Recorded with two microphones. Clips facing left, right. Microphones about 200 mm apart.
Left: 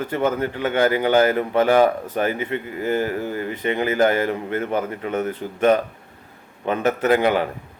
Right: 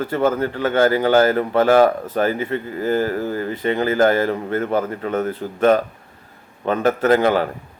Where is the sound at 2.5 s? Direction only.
40° right (ahead or behind).